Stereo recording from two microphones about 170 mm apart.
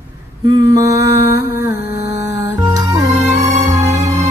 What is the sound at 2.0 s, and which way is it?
Music, 20° right (ahead or behind).